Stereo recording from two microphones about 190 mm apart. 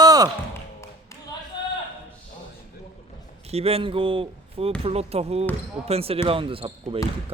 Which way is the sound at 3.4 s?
30° right (ahead or behind).